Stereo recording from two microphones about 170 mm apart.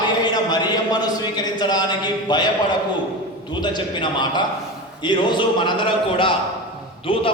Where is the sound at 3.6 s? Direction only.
25° left (ahead or behind).